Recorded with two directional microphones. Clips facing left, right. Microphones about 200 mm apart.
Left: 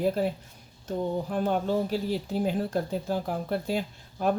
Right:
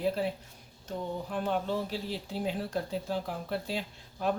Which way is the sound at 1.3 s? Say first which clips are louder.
Left 3 dB; 45° left (ahead or behind).